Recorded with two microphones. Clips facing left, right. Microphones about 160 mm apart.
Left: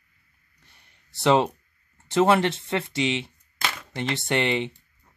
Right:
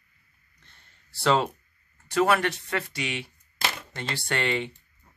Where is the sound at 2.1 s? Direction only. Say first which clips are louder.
Left 3 dB; 25° left (ahead or behind).